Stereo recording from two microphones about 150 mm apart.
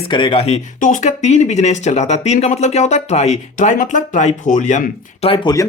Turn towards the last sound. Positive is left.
turn(degrees=30)  # may be behind; listen again after turning